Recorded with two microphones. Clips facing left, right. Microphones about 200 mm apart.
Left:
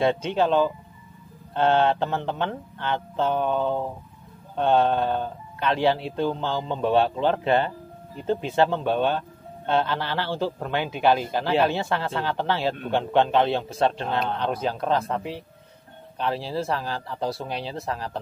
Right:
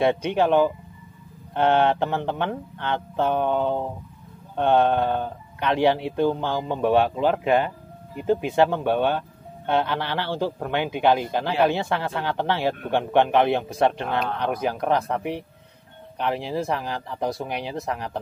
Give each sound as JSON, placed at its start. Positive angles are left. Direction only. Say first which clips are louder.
{"t": 0.0, "sound": "speech", "louder": "right 1 dB", "side_deg": -15}